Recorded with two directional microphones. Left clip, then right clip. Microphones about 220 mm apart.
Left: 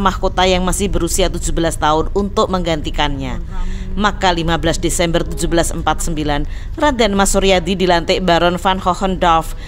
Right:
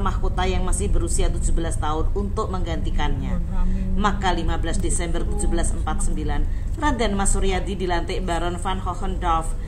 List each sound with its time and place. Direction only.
0.0 s speech: 45° left (ahead or behind)